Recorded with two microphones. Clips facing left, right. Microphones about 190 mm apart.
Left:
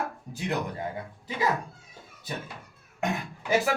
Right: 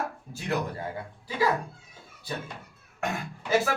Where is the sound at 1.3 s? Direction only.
20° left (ahead or behind).